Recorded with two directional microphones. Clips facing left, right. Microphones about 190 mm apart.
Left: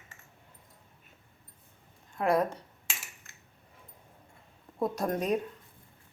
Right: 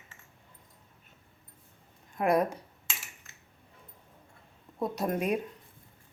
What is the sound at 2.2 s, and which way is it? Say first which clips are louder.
Speech: right 1 dB; 15° right (ahead or behind).